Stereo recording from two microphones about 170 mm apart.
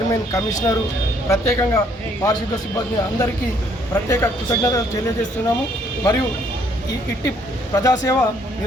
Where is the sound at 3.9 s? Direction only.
20° left (ahead or behind).